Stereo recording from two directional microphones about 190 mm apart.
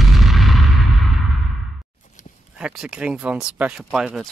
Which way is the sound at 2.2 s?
40° left (ahead or behind).